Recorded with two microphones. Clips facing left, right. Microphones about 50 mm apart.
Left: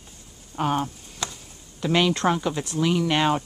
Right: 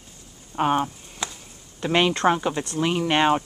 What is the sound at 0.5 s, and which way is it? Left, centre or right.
Speech, right.